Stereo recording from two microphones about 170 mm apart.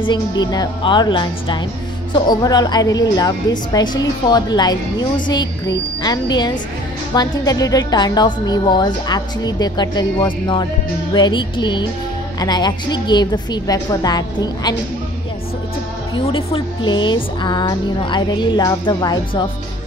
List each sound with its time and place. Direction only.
0.0 s a woman's voice: 25° left (ahead or behind)
16.3 s a woman's voice: 35° left (ahead or behind)